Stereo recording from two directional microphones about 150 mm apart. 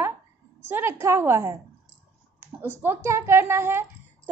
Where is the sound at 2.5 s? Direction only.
15° right (ahead or behind).